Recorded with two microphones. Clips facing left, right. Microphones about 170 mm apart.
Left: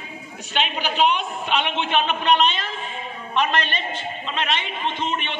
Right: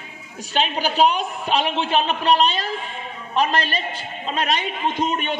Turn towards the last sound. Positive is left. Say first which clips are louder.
# right 4 dB
turn(degrees=-40)  # may be behind; listen again after turning